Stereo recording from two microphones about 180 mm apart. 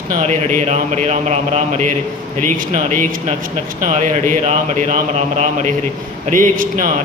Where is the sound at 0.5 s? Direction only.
40° right (ahead or behind).